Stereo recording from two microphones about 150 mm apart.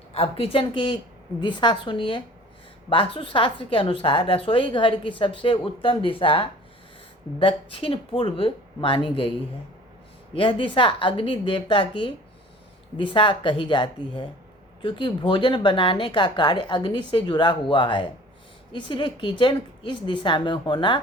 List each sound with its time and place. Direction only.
0.1 s a woman's voice: 40° left (ahead or behind)
10.3 s a woman's voice: 35° left (ahead or behind)